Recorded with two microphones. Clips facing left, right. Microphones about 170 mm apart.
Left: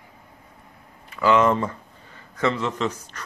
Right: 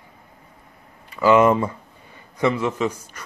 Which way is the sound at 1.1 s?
10° right (ahead or behind).